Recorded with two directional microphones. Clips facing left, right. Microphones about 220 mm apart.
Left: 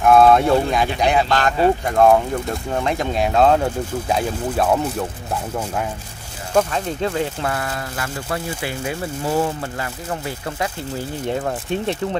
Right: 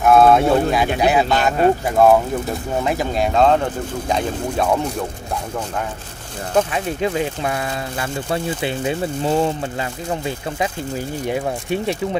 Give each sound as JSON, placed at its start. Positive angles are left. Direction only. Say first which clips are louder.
{"t": 0.0, "sound": "speech", "louder": "even", "side_deg": 0}
{"t": 6.5, "sound": "speech", "louder": "even", "side_deg": -5}